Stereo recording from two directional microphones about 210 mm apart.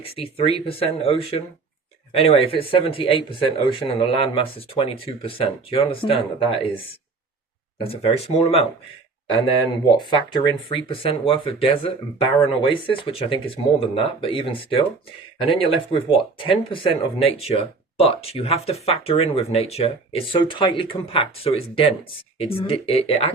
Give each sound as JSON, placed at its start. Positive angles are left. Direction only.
{"t": 0.0, "sound": "speech", "side_deg": 25}
{"t": 7.9, "sound": "speech", "side_deg": 30}
{"t": 10.0, "sound": "speech", "side_deg": 20}